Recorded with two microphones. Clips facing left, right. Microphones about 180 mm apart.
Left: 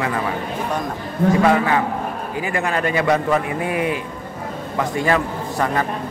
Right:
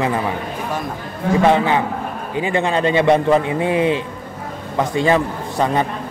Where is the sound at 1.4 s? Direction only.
25° right (ahead or behind).